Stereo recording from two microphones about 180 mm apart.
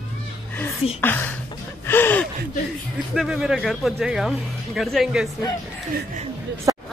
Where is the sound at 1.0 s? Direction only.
10° left (ahead or behind).